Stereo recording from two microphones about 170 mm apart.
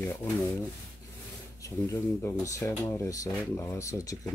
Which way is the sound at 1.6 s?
15° left (ahead or behind).